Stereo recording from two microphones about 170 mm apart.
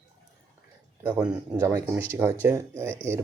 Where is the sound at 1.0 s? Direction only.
5° right (ahead or behind).